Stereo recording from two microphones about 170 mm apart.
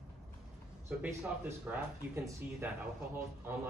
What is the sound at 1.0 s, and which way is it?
Speech, 10° right (ahead or behind).